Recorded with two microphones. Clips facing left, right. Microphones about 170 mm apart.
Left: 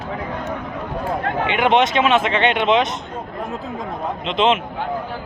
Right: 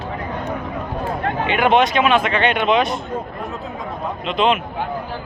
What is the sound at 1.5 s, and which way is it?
Speech, 20° left (ahead or behind).